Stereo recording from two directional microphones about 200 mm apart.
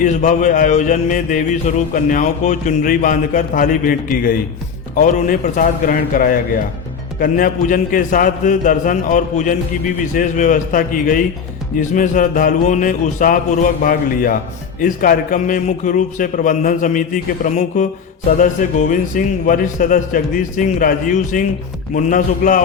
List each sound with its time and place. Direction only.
0.0 s music: 40° left (ahead or behind)
4.9 s a man's voice: 40° left (ahead or behind)
7.2 s music: 45° left (ahead or behind)
13.8 s a man's voice: 45° left (ahead or behind)
14.8 s music: 45° left (ahead or behind)